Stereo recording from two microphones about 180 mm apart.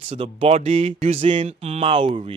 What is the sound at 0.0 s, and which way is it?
Speech, 30° right (ahead or behind).